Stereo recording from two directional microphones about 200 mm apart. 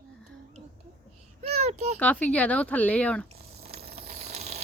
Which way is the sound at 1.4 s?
30° right (ahead or behind).